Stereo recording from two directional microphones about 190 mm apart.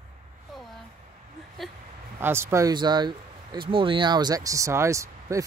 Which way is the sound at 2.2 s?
15° right (ahead or behind).